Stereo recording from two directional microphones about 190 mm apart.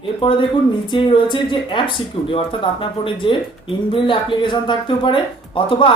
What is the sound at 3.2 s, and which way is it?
Speech, 25° left (ahead or behind).